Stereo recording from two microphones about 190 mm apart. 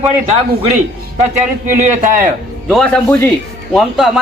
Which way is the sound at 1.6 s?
10° right (ahead or behind).